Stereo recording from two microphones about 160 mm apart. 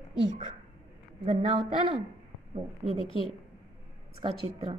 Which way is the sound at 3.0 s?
35° left (ahead or behind).